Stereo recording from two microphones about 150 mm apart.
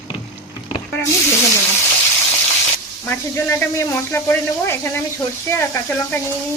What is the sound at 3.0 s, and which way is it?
Speech, 20° left (ahead or behind).